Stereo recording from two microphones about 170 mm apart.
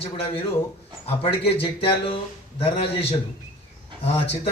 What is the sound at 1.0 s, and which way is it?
A man's voice, 35° left (ahead or behind).